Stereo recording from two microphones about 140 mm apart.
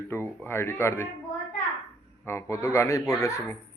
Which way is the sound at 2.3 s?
20° left (ahead or behind).